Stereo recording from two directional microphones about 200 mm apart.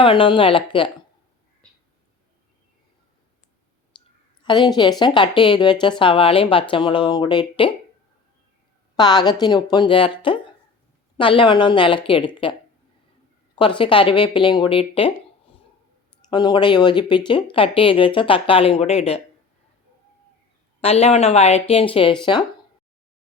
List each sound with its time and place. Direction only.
0.0 s speech: 25° left (ahead or behind)
4.4 s speech: 20° left (ahead or behind)
9.0 s speech: 20° left (ahead or behind)
13.6 s speech: 25° left (ahead or behind)
16.3 s speech: 20° left (ahead or behind)
20.8 s speech: 30° left (ahead or behind)